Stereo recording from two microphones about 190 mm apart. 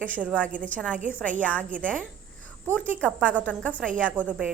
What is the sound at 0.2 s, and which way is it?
Speech, 5° right (ahead or behind).